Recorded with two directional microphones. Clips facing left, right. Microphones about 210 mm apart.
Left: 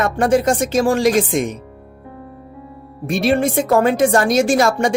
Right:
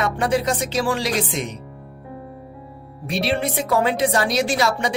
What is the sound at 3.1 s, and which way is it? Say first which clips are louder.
Speech: left 6 dB; 45° left (ahead or behind).